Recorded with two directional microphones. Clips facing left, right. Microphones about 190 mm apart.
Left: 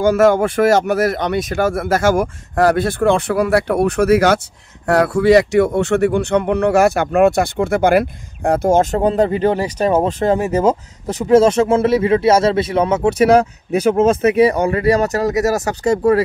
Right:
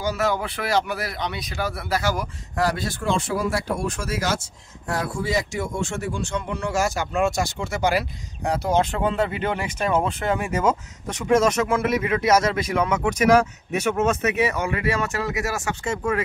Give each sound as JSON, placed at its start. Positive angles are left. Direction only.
{"t": 0.0, "sound": "speech", "side_deg": 50}